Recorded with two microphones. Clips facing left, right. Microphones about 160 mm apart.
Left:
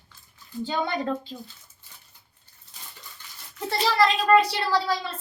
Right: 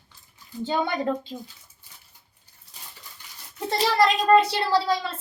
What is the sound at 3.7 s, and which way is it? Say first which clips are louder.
A child's voice: right 1 dB; 20° right (ahead or behind).